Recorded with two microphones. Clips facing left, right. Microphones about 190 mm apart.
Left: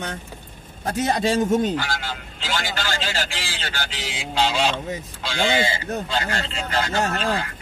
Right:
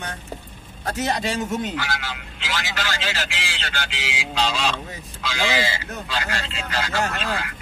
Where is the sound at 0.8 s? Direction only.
30° left (ahead or behind).